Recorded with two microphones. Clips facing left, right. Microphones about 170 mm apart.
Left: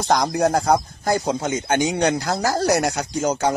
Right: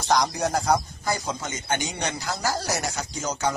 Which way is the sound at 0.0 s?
60° left (ahead or behind).